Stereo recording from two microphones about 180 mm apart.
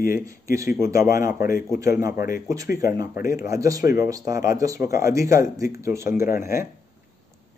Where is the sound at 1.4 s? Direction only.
50° left (ahead or behind).